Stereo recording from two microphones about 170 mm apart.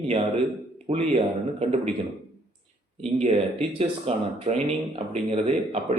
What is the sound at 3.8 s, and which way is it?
Speech, 40° right (ahead or behind).